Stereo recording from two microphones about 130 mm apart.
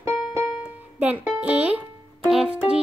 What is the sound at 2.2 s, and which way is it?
Music, 5° right (ahead or behind).